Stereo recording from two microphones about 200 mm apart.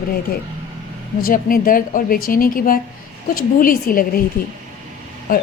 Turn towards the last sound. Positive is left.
turn(degrees=45)  # may be behind; listen again after turning